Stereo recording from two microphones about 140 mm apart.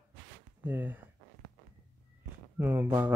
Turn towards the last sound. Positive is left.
turn(degrees=-15)  # may be behind; listen again after turning